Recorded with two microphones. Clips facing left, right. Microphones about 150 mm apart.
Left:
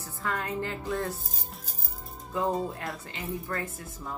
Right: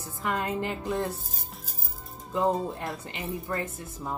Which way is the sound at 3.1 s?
20° right (ahead or behind).